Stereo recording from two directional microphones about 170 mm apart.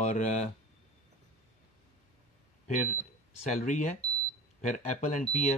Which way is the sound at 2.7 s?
45° left (ahead or behind).